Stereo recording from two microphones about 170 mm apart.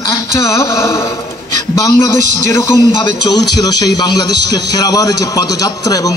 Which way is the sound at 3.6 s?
25° left (ahead or behind).